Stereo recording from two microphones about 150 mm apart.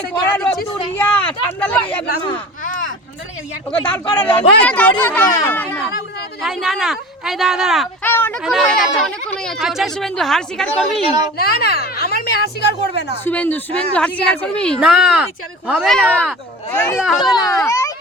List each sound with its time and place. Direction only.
0.9 s a sound: 10° left (ahead or behind)
1.5 s speech: 10° left (ahead or behind)
3.7 s speech: 10° left (ahead or behind)
6.4 s speech: centre (ahead or behind)
8.0 s speech: 15° left (ahead or behind)
8.4 s speech: centre (ahead or behind)
11.3 s speech: 90° left
13.2 s speech: 10° left (ahead or behind)
14.8 s speech: 5° right (ahead or behind); by 17.0 s 15° left (ahead or behind)
17.0 s speech: centre (ahead or behind)
17.3 s a child's voice: 25° left (ahead or behind)